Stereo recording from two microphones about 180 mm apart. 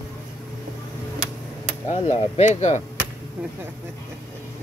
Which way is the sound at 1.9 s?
35° left (ahead or behind).